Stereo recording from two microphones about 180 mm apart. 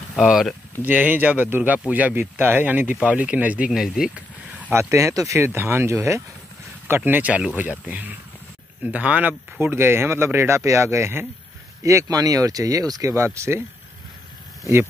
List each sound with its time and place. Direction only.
0.1 s speech: centre (ahead or behind)
4.6 s speech: 15° right (ahead or behind)